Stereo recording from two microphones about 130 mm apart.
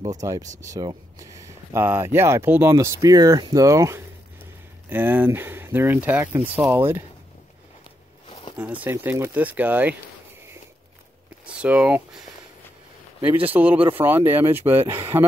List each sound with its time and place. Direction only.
0.0 s speech: 25° right (ahead or behind)
0.4 s speech: 70° right (ahead or behind)
0.7 s speech: 25° right (ahead or behind)
4.8 s speech: 15° right (ahead or behind)
8.5 s speech: 10° right (ahead or behind)
11.4 s speech: 10° right (ahead or behind)
13.5 s speech: 15° right (ahead or behind)